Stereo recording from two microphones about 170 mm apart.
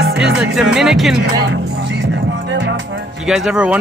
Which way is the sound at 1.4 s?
90° right.